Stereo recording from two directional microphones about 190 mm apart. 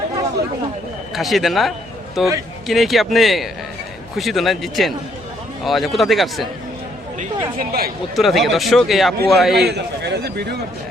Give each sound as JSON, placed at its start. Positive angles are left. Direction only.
{"t": 1.1, "sound": "a man's voice", "side_deg": 0}
{"t": 7.6, "sound": "speech", "side_deg": -50}
{"t": 8.1, "sound": "a man's voice", "side_deg": 0}
{"t": 9.6, "sound": "a man's voice", "side_deg": -60}